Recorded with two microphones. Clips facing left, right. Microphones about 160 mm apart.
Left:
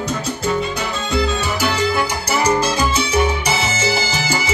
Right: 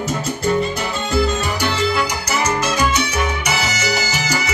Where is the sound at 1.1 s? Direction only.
Centre (ahead or behind).